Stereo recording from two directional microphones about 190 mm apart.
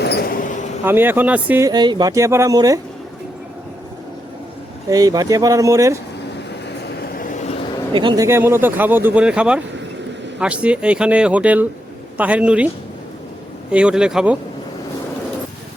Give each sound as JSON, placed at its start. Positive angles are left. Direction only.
{"t": 0.0, "sound": "a sound", "side_deg": 60}
{"t": 0.4, "sound": "a sound", "side_deg": 40}
{"t": 0.9, "sound": "speech", "side_deg": -10}
{"t": 4.9, "sound": "speech", "side_deg": -20}
{"t": 6.8, "sound": "vehicle", "side_deg": 55}
{"t": 7.9, "sound": "speech", "side_deg": -20}
{"t": 13.7, "sound": "speech", "side_deg": -5}